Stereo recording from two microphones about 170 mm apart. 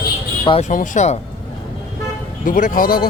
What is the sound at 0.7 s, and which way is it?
Speech, 50° left (ahead or behind).